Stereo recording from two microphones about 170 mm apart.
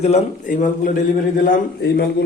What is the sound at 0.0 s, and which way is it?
Speech, 40° left (ahead or behind).